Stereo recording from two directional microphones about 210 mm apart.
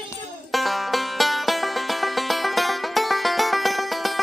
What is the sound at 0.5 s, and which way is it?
Music, centre (ahead or behind).